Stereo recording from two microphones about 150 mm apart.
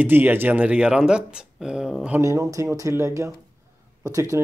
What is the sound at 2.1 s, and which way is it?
Speech, 20° right (ahead or behind).